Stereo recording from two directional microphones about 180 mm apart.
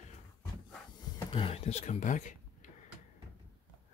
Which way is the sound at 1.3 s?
30° left (ahead or behind).